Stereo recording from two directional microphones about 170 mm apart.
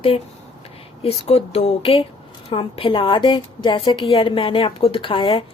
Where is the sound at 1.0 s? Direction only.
35° left (ahead or behind).